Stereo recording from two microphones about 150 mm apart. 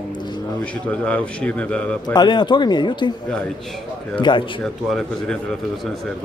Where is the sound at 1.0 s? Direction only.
10° left (ahead or behind).